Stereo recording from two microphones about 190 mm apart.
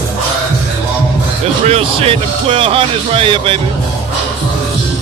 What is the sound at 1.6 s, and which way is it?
Speech, 30° right (ahead or behind).